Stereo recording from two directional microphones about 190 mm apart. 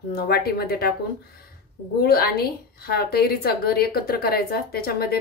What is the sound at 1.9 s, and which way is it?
A woman's voice, 55° left (ahead or behind).